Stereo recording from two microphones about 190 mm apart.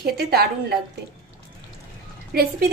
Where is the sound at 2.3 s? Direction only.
55° right (ahead or behind).